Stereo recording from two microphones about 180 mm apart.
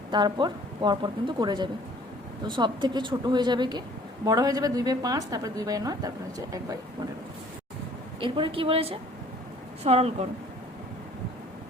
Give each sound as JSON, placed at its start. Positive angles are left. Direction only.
{"t": 0.1, "sound": "a woman's voice", "side_deg": -25}
{"t": 8.2, "sound": "a woman's voice", "side_deg": -30}